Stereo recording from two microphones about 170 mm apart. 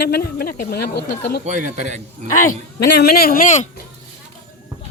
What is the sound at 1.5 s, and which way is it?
Speech, 45° right (ahead or behind).